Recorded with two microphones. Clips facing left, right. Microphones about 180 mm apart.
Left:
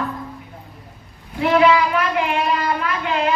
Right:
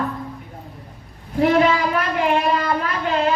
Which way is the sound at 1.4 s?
40° right (ahead or behind).